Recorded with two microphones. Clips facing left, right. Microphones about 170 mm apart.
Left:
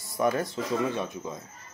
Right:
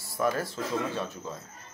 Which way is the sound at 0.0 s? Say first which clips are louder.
Left 2 dB; 20° left (ahead or behind).